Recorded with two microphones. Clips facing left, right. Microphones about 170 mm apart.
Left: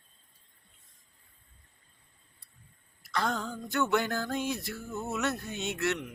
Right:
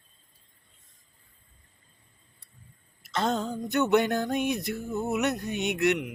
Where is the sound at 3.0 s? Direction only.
20° right (ahead or behind).